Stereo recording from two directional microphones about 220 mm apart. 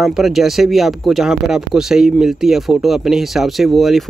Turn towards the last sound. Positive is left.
turn(degrees=0)  # may be behind; listen again after turning